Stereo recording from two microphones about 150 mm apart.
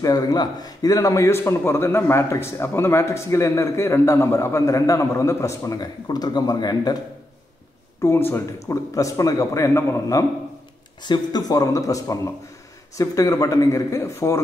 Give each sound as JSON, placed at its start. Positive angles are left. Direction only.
{"t": 0.0, "sound": "a man's voice", "side_deg": 25}
{"t": 8.0, "sound": "a man's voice", "side_deg": 15}